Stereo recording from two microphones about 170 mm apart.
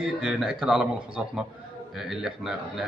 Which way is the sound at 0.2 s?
5° right (ahead or behind).